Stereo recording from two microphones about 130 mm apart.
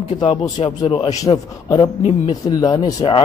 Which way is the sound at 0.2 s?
40° left (ahead or behind).